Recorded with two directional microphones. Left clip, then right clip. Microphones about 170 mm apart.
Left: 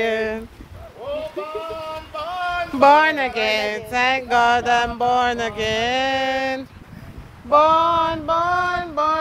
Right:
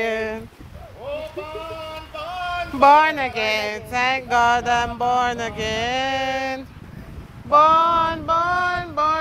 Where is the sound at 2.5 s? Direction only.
15° left (ahead or behind).